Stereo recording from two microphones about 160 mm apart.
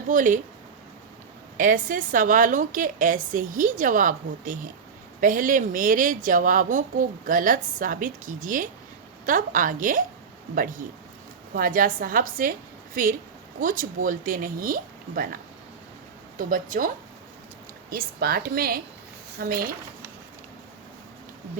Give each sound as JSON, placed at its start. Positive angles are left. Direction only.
{"t": 0.1, "sound": "a woman's voice", "side_deg": -55}
{"t": 1.5, "sound": "a woman's voice", "side_deg": -55}
{"t": 16.4, "sound": "a woman's voice", "side_deg": -55}
{"t": 17.9, "sound": "a woman's voice", "side_deg": -70}